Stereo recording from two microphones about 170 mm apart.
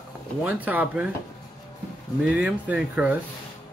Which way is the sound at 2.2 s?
5° right (ahead or behind).